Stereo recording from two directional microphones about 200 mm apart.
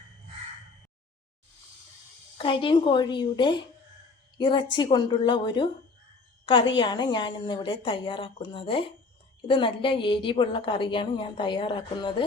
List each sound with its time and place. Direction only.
2.4 s a woman's voice: 25° left (ahead or behind)